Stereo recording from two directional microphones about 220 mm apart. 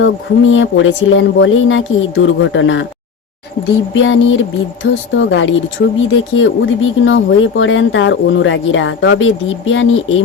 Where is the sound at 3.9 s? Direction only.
60° left (ahead or behind).